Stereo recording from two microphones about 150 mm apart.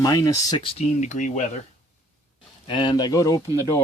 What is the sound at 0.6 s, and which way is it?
Speech, 45° left (ahead or behind).